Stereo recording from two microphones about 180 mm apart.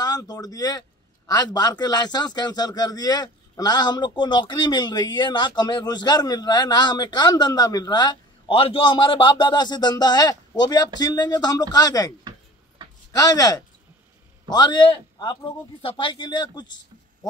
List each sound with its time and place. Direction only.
0.0 s a man's voice: 20° left (ahead or behind)
13.1 s speech: 20° left (ahead or behind)